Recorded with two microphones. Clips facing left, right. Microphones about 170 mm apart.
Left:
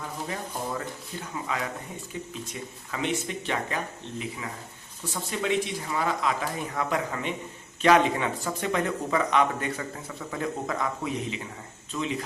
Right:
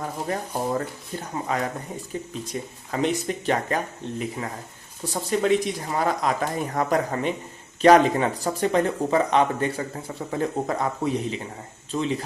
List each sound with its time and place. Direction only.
0.0 s speech: 45° right (ahead or behind)